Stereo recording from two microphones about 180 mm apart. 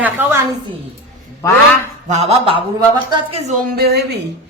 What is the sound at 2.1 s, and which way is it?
A man's voice, 35° right (ahead or behind).